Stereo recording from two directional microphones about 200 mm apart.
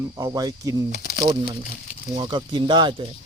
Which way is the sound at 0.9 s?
50° left (ahead or behind).